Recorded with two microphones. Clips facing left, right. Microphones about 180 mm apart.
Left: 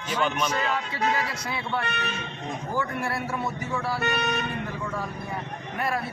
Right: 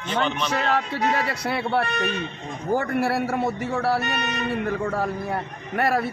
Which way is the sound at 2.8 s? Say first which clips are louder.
Right 4 dB; 70° right (ahead or behind).